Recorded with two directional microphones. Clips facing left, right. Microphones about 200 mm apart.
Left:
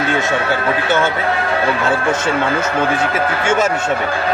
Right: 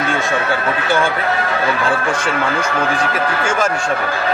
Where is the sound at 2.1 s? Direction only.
25° left (ahead or behind).